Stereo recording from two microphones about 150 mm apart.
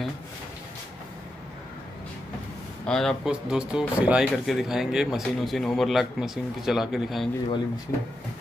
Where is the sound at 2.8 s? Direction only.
5° left (ahead or behind).